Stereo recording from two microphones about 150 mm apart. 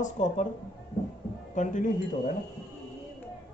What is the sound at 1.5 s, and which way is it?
Speech, 55° left (ahead or behind).